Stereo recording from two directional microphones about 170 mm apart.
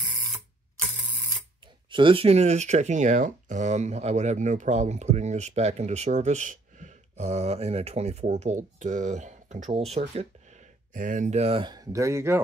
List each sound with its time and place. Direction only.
1.9 s speech: 30° right (ahead or behind)
10.9 s speech: 50° right (ahead or behind); by 12.4 s 15° right (ahead or behind)